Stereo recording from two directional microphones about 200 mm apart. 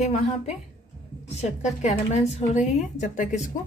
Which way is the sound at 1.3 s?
35° left (ahead or behind).